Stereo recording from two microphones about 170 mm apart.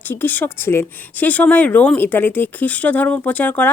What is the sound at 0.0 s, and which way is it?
Speech, 10° left (ahead or behind).